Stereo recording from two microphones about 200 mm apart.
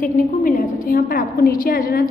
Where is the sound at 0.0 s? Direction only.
40° left (ahead or behind).